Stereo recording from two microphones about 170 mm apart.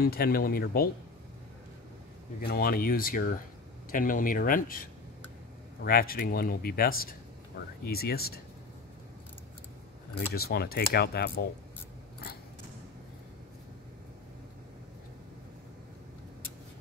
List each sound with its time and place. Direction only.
0.0 s speech: 60° left (ahead or behind)
2.4 s speech: 65° left (ahead or behind)
5.9 s speech: 60° left (ahead or behind)
10.3 s speech: 70° left (ahead or behind)